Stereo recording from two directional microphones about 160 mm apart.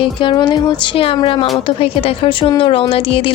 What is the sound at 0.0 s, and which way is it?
A woman's voice, 30° left (ahead or behind).